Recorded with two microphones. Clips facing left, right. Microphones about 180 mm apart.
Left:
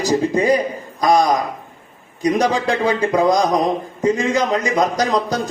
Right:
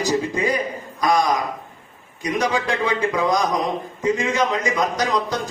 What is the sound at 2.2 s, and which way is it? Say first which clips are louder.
A man's voice: left 5 dB; 35° left (ahead or behind).